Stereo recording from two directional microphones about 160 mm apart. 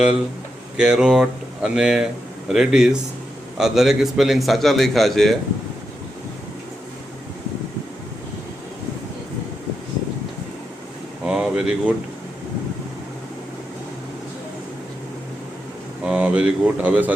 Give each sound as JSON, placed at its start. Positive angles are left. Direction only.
{"t": 0.8, "sound": "a man's voice", "side_deg": -5}
{"t": 11.2, "sound": "a sound", "side_deg": -5}
{"t": 16.0, "sound": "speech", "side_deg": -10}